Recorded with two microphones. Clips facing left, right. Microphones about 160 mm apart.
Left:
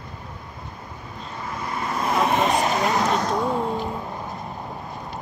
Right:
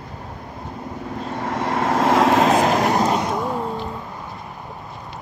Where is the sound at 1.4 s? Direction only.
85° right.